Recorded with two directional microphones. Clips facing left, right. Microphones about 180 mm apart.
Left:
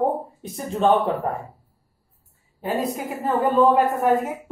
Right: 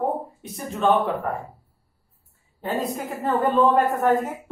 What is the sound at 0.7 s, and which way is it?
Speech, 25° left (ahead or behind).